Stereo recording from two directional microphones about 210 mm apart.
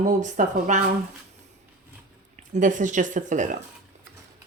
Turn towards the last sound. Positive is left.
turn(degrees=-35)  # may be behind; listen again after turning